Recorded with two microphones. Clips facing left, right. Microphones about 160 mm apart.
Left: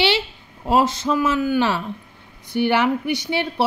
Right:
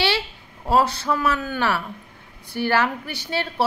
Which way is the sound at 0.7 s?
20° left (ahead or behind).